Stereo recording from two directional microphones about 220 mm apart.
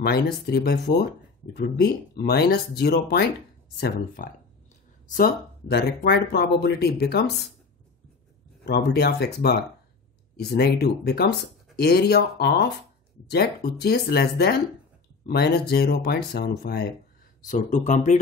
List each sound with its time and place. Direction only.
0.0 s speech: 45° left (ahead or behind)
8.6 s speech: 45° left (ahead or behind)